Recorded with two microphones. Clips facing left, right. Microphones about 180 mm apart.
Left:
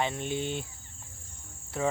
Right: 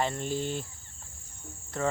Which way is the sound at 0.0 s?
Centre (ahead or behind).